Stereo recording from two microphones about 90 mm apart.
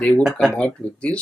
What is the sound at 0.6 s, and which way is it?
Speech, 15° left (ahead or behind).